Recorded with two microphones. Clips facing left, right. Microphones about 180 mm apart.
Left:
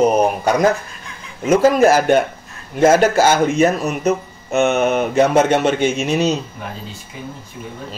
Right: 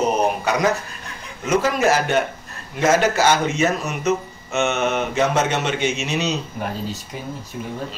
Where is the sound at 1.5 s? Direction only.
50° left (ahead or behind).